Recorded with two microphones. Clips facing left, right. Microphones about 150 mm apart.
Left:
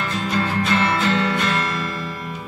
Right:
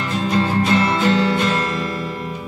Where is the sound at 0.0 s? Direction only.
30° right (ahead or behind).